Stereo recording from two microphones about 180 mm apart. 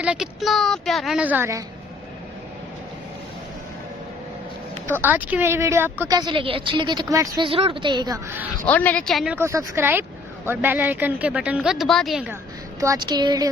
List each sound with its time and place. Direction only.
0.0 s a woman's voice: 5° right (ahead or behind)
4.9 s speech: 10° right (ahead or behind)
6.1 s a woman's voice: 25° right (ahead or behind)
8.6 s speech: 10° left (ahead or behind)
9.4 s speech: 15° right (ahead or behind)
12.8 s a woman's voice: 20° right (ahead or behind)